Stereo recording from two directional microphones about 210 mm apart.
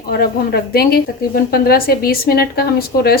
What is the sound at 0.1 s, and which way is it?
Speech, 45° left (ahead or behind).